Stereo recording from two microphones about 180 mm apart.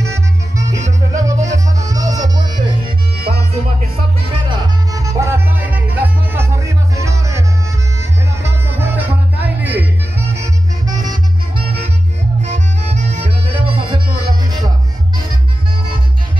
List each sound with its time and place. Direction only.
0.0 s music: 15° right (ahead or behind)
4.5 s music: 15° right (ahead or behind)
12.4 s music: 40° right (ahead or behind)